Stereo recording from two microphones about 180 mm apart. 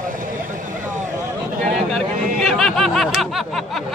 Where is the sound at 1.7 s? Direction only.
Centre (ahead or behind).